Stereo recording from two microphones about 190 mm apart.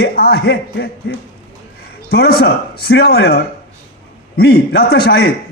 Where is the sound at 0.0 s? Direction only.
55° left (ahead or behind).